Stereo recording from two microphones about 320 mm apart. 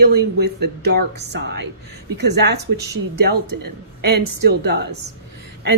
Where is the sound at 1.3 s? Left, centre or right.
Right.